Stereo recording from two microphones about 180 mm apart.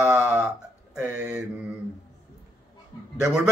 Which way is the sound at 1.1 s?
5° right (ahead or behind).